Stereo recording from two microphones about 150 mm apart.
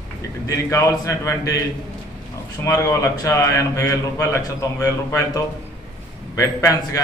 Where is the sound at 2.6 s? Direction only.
20° left (ahead or behind).